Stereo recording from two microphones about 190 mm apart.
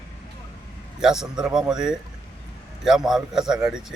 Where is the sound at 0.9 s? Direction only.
5° right (ahead or behind).